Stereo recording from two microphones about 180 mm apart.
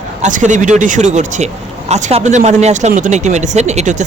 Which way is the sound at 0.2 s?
45° right (ahead or behind).